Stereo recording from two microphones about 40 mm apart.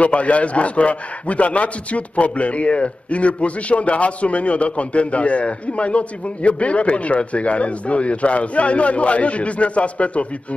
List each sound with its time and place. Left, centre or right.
0.0 s a man's voice: left